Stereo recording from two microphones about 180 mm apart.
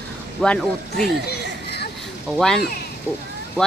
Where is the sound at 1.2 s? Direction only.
65° left (ahead or behind).